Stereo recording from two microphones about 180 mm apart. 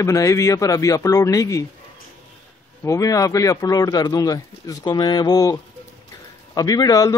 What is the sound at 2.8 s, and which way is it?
A man's voice, 20° left (ahead or behind).